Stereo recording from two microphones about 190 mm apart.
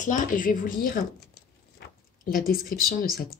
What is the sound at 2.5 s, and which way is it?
Speech, 50° left (ahead or behind).